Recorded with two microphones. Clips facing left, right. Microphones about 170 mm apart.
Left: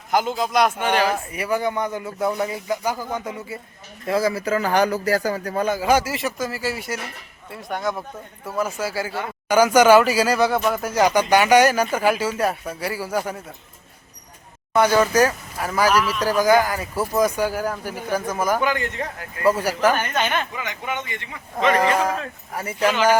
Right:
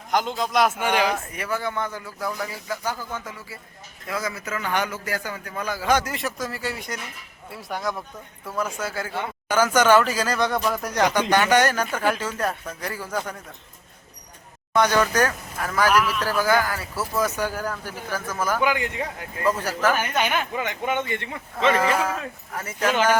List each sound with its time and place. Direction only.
0.1 s speech: 5° left (ahead or behind); by 1.1 s 10° right (ahead or behind)
1.1 s a man's voice: 10° left (ahead or behind); by 5.6 s 40° left (ahead or behind)
5.6 s speech: 15° left (ahead or behind)
14.7 s speech: 10° left (ahead or behind)
18.6 s speech: 10° right (ahead or behind)
19.5 s speech: 10° left (ahead or behind)
20.0 s speech: 10° right (ahead or behind)
20.6 s speech: 50° right (ahead or behind)
21.7 s a man's voice: 40° left (ahead or behind)
21.9 s speech: 15° left (ahead or behind)